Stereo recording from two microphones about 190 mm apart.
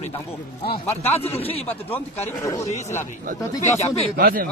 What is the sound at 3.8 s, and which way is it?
Speech, 35° left (ahead or behind).